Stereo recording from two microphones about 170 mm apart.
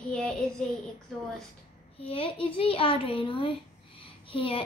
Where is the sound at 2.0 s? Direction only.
35° left (ahead or behind).